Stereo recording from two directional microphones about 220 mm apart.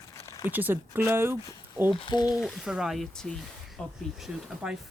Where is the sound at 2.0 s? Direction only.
20° left (ahead or behind).